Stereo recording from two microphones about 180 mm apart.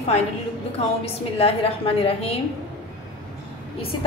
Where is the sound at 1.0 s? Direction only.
35° left (ahead or behind).